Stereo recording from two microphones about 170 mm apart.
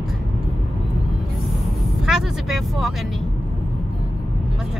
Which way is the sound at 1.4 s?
Centre (ahead or behind).